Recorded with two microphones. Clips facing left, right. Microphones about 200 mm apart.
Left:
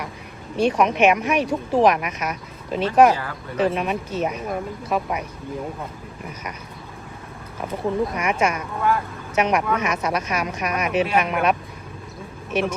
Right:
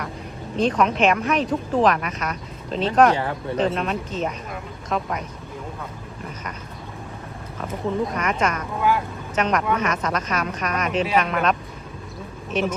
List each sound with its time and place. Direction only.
0.5 s speech: 10° left (ahead or behind)
3.2 s speech: 25° right (ahead or behind)
3.6 s speech: 10° left (ahead or behind)
7.7 s speech: 10° left (ahead or behind)
12.5 s speech: 10° left (ahead or behind)